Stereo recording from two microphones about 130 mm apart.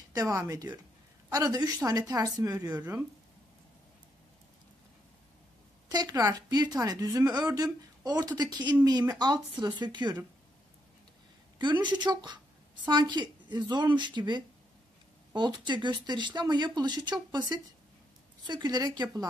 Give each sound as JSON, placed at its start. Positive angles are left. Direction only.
{"t": 0.1, "sound": "speech", "side_deg": -30}
{"t": 5.9, "sound": "speech", "side_deg": -30}
{"t": 11.5, "sound": "speech", "side_deg": -35}
{"t": 18.5, "sound": "speech", "side_deg": -35}